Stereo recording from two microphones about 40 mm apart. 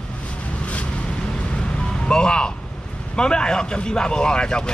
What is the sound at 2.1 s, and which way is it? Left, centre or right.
Speech, left.